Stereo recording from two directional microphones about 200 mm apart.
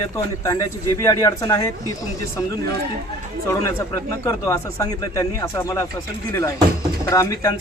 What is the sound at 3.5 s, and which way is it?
A man's voice, 15° left (ahead or behind).